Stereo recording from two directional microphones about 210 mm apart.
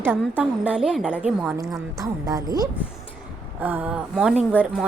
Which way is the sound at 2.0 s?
15° right (ahead or behind).